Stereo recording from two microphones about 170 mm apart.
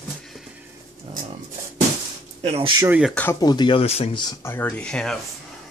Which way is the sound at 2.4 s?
30° right (ahead or behind).